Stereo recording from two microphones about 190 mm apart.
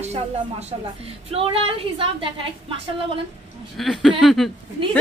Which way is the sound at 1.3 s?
30° right (ahead or behind).